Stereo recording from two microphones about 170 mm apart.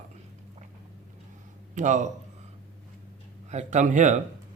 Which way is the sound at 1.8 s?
45° right (ahead or behind).